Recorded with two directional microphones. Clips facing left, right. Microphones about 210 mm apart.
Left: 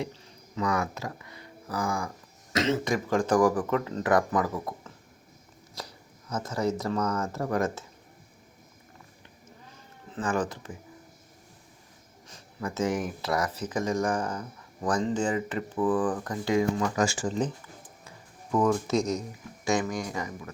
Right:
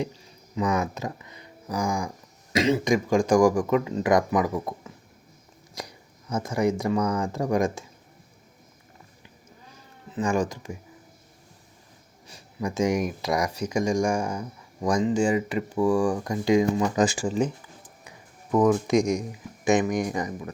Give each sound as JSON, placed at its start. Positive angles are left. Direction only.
{"t": 0.5, "sound": "speech", "side_deg": -20}
{"t": 5.8, "sound": "a sound", "side_deg": -15}
{"t": 6.3, "sound": "speech", "side_deg": -10}
{"t": 10.1, "sound": "speech", "side_deg": -10}
{"t": 12.3, "sound": "speech", "side_deg": -15}
{"t": 18.6, "sound": "speech", "side_deg": -15}